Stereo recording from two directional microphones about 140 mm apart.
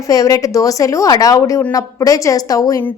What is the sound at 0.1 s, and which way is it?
A woman's voice, 25° left (ahead or behind).